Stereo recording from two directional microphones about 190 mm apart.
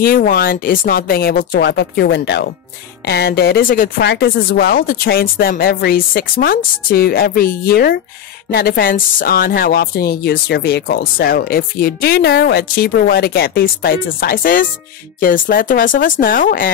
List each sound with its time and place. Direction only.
0.0 s speech: 50° left (ahead or behind)